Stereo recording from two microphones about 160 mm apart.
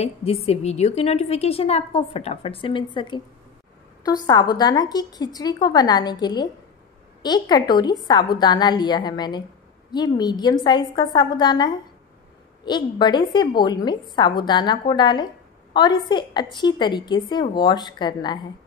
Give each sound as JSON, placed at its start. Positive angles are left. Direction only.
{"t": 0.0, "sound": "a woman's voice", "side_deg": 40}